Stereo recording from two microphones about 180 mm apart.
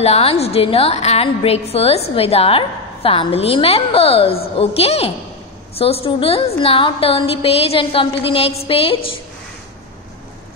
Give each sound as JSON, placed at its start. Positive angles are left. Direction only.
{"t": 0.0, "sound": "a woman's voice", "side_deg": 35}